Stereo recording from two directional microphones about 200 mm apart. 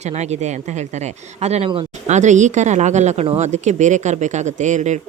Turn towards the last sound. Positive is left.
turn(degrees=-35)  # may be behind; listen again after turning